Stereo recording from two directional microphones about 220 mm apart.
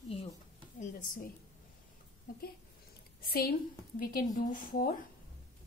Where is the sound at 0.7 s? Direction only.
35° left (ahead or behind).